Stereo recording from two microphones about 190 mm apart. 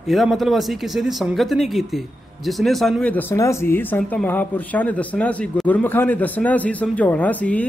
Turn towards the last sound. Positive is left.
turn(degrees=10)  # may be behind; listen again after turning